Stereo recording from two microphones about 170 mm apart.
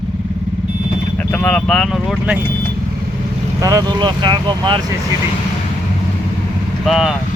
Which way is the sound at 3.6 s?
20° right (ahead or behind).